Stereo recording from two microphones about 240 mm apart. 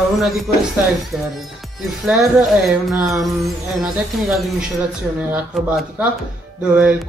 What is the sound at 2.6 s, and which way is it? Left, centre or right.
Speech, centre.